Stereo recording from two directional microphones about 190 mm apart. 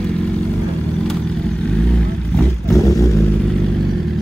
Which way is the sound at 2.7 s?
15° left (ahead or behind).